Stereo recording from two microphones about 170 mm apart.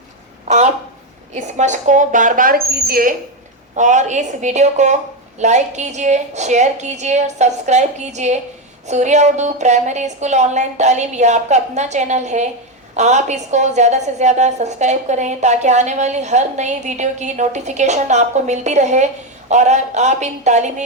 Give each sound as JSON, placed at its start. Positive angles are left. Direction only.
{"t": 0.4, "sound": "a sound", "side_deg": -45}
{"t": 1.4, "sound": "a woman's voice", "side_deg": -45}
{"t": 3.8, "sound": "a woman's voice", "side_deg": -45}